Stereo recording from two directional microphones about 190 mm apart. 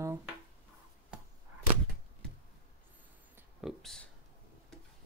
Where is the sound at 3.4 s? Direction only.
5° right (ahead or behind).